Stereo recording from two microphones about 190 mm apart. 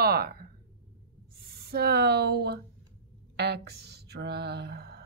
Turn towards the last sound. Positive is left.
turn(degrees=-60)  # may be behind; listen again after turning